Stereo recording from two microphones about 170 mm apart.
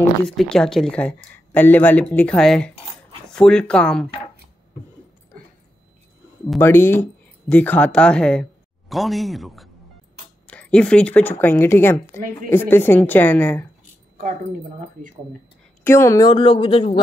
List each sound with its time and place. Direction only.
0.4 s speech: 5° left (ahead or behind)
6.6 s speech: 15° left (ahead or behind)
15.8 s speech: 15° left (ahead or behind)